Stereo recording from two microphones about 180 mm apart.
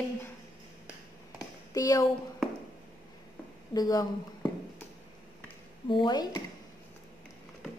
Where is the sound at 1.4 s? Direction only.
20° left (ahead or behind).